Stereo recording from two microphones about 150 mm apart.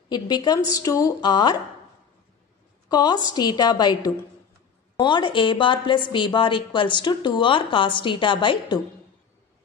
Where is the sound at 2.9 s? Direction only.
25° left (ahead or behind).